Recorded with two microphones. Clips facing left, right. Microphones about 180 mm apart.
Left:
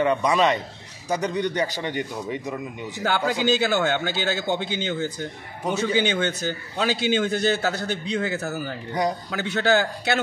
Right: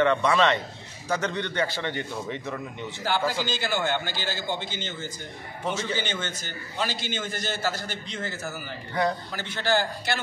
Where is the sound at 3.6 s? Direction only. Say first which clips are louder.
Left 5 dB; 65° left (ahead or behind).